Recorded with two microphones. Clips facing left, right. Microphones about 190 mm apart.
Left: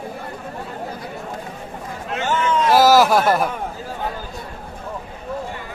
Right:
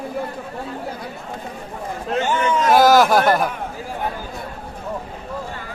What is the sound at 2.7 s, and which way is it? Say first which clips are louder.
Speech: even; centre (ahead or behind).